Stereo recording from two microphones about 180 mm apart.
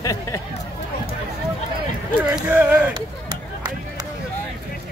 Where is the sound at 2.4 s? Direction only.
10° right (ahead or behind).